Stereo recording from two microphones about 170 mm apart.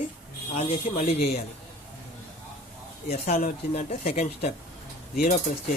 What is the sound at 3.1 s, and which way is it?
Speech, 45° left (ahead or behind).